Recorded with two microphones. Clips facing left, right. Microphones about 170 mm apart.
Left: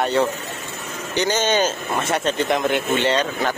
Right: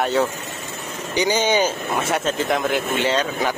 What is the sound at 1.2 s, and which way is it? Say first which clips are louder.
Speech: right 1 dB; 10° right (ahead or behind).